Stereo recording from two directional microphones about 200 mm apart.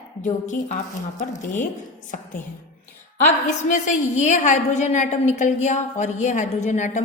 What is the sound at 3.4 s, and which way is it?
A woman's voice, 40° left (ahead or behind).